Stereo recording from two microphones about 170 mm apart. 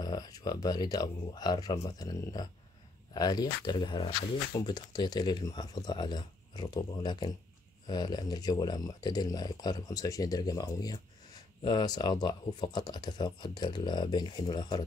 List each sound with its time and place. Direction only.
0.0 s speech: 20° left (ahead or behind)